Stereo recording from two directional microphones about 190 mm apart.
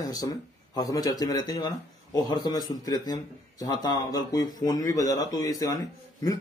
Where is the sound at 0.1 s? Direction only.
20° left (ahead or behind).